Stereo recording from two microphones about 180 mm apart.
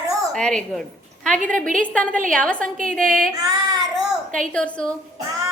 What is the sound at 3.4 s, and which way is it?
Child singing, 20° right (ahead or behind).